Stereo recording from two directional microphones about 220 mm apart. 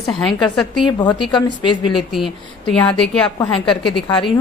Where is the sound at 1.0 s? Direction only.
20° left (ahead or behind).